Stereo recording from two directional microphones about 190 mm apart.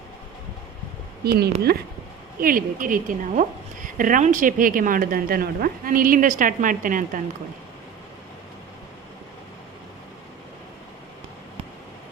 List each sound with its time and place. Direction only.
1.2 s a woman's voice: 55° right (ahead or behind)